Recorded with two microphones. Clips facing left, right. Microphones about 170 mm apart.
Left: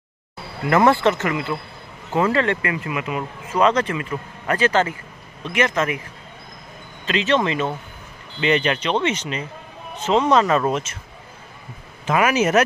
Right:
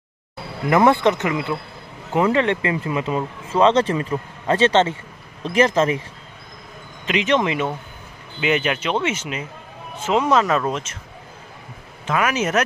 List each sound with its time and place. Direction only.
0.7 s speech: 15° right (ahead or behind); by 6.0 s 30° right (ahead or behind)
7.1 s speech: 15° right (ahead or behind); by 11.0 s 5° left (ahead or behind)
12.1 s speech: 5° left (ahead or behind)